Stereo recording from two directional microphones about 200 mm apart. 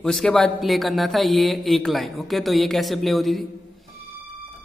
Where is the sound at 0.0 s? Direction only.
Centre (ahead or behind).